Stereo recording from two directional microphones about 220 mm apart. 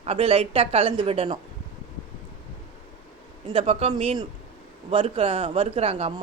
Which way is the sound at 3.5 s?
25° right (ahead or behind).